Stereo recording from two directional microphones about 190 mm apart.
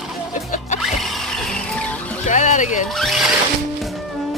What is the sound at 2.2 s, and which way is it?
Vehicle, 40° left (ahead or behind).